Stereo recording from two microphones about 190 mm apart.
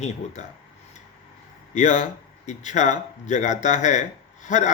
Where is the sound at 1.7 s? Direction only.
40° left (ahead or behind).